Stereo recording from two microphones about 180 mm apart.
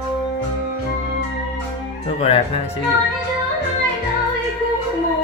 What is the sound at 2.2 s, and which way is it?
Speech, 35° left (ahead or behind).